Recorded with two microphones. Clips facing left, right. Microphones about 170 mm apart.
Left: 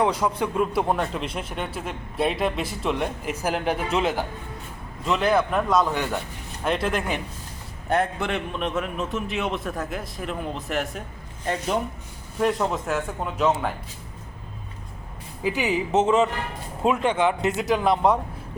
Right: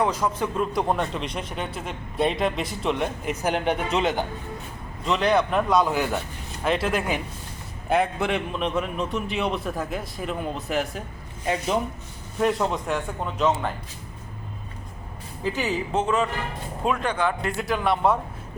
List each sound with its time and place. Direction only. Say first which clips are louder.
0.0 s a man's voice: left 1 dB; 10° left (ahead or behind)
15.4 s speech: left 2 dB; 15° left (ahead or behind)